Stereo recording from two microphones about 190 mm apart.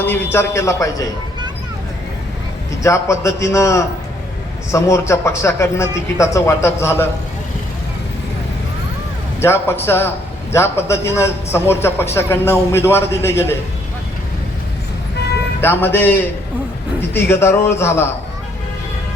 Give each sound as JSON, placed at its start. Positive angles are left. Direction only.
{"t": 0.0, "sound": "a man's voice", "side_deg": 10}
{"t": 2.8, "sound": "a man's voice", "side_deg": 15}
{"t": 9.4, "sound": "a man's voice", "side_deg": 10}
{"t": 15.6, "sound": "a man's voice", "side_deg": 10}
{"t": 17.2, "sound": "a man's voice", "side_deg": 15}